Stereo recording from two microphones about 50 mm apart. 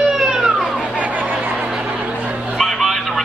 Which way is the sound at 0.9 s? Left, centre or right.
Right.